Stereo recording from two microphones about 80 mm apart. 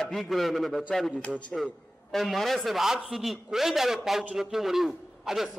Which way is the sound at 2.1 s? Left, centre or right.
Centre.